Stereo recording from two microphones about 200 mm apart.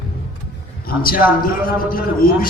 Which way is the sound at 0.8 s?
45° left (ahead or behind).